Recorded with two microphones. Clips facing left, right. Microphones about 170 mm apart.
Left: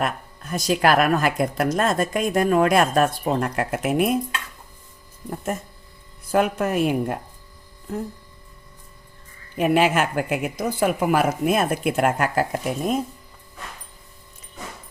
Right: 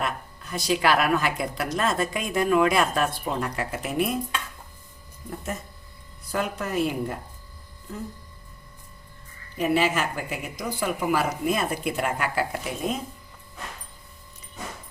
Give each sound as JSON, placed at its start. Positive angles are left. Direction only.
{"t": 0.0, "sound": "speech", "side_deg": 45}
{"t": 6.3, "sound": "a woman's voice", "side_deg": 60}
{"t": 9.6, "sound": "speech", "side_deg": 55}